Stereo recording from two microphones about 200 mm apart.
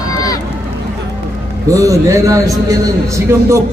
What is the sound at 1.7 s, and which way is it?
A man's voice, 15° right (ahead or behind).